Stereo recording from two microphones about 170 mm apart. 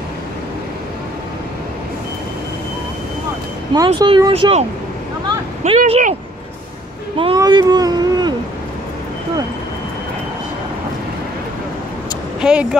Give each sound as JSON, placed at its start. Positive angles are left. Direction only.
{"t": 3.7, "sound": "speech", "side_deg": -25}
{"t": 4.3, "sound": "speech", "side_deg": -35}
{"t": 7.2, "sound": "speech", "side_deg": -30}
{"t": 12.4, "sound": "speech", "side_deg": -5}